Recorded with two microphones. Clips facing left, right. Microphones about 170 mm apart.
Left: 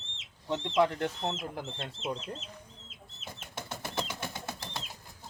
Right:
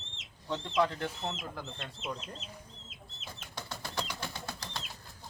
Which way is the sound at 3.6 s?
20° left (ahead or behind).